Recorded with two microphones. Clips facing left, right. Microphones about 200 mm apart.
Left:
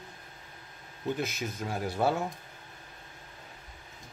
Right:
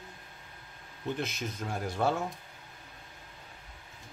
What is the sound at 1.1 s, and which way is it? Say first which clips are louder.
Speech: even; 5° left (ahead or behind).